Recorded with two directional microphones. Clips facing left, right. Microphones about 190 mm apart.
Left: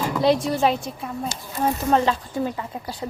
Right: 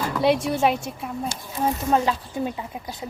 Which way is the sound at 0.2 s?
10° right (ahead or behind).